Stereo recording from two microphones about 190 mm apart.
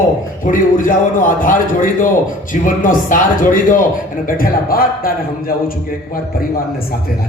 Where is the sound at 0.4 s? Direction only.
45° left (ahead or behind).